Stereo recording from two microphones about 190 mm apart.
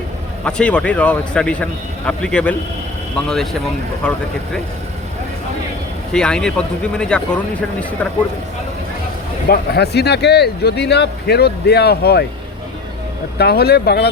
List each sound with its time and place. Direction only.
0.4 s speech: 5° left (ahead or behind)
6.1 s speech: 5° left (ahead or behind)
9.5 s speech: 60° left (ahead or behind)
13.4 s speech: 55° left (ahead or behind)